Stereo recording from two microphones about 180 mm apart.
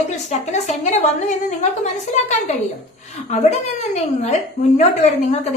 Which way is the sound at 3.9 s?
40° left (ahead or behind).